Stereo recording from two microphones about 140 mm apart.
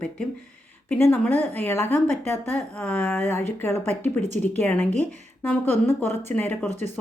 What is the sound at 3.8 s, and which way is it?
Speech, 50° right (ahead or behind).